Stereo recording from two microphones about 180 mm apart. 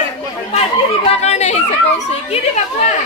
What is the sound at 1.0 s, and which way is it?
Speech, 35° left (ahead or behind).